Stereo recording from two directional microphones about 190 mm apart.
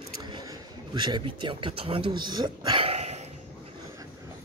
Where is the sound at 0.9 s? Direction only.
25° right (ahead or behind).